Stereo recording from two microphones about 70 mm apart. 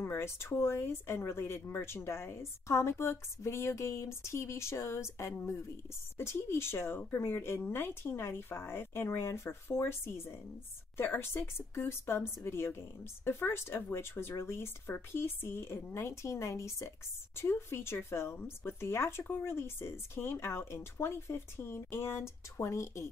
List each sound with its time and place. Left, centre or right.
0.0 s speech: left